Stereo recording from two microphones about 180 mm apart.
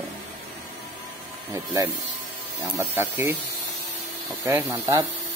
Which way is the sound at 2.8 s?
15° right (ahead or behind).